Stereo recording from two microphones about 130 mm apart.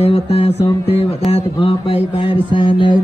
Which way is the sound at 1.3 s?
45° left (ahead or behind).